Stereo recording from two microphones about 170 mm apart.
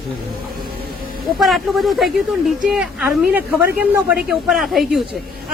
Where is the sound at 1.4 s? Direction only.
Centre (ahead or behind).